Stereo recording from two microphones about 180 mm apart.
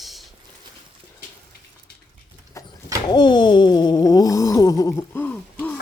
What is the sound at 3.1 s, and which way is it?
Speech, 25° left (ahead or behind).